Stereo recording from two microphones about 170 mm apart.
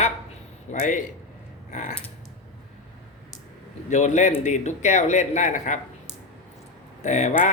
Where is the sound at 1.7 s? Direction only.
45° left (ahead or behind).